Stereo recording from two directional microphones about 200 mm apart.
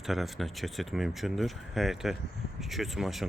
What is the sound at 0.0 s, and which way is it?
Speech, centre (ahead or behind).